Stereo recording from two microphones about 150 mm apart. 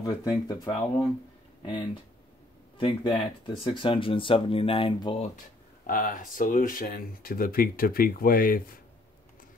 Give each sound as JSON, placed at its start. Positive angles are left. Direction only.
{"t": 0.0, "sound": "speech", "side_deg": 25}
{"t": 5.9, "sound": "speech", "side_deg": 70}